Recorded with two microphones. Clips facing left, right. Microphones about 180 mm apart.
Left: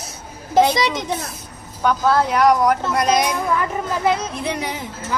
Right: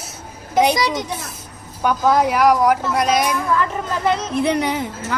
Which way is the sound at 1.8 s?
15° right (ahead or behind).